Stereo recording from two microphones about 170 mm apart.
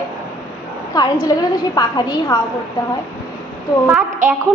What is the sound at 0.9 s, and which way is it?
A woman's voice, 20° left (ahead or behind).